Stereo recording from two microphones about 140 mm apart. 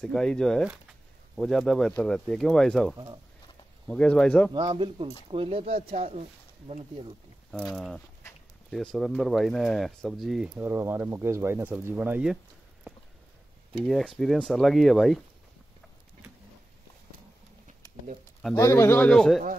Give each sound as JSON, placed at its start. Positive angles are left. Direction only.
{"t": 0.0, "sound": "speech", "side_deg": 5}
{"t": 4.6, "sound": "speech", "side_deg": -35}
{"t": 7.5, "sound": "speech", "side_deg": 5}
{"t": 13.8, "sound": "speech", "side_deg": 0}
{"t": 18.6, "sound": "speech", "side_deg": 20}